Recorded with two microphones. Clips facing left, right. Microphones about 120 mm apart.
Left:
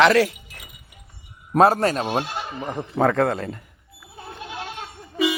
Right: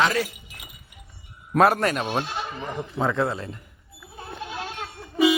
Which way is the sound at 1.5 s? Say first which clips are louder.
Left 3 dB; 30° left (ahead or behind).